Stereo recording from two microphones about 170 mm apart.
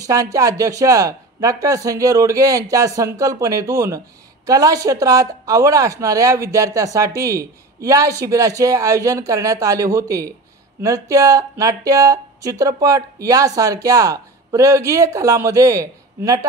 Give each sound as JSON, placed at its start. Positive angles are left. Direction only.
{"t": 0.0, "sound": "speech", "side_deg": -20}